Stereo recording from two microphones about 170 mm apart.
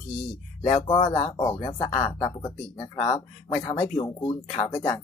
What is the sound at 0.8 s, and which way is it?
Speech, 30° left (ahead or behind).